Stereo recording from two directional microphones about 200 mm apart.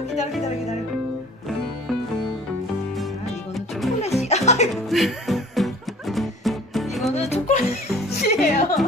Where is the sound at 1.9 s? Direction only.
Centre (ahead or behind).